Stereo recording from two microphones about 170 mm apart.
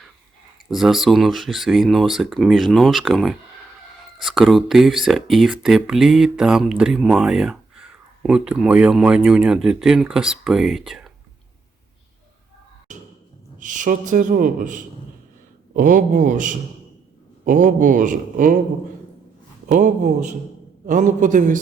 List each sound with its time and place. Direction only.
0.7 s speech: centre (ahead or behind)
13.6 s a man's voice: 50° right (ahead or behind)
19.6 s a man's voice: 45° right (ahead or behind)